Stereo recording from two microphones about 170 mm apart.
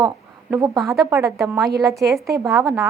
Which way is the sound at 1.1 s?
20° right (ahead or behind).